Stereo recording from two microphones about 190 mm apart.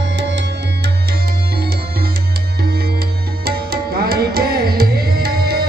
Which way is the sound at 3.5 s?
55° right (ahead or behind).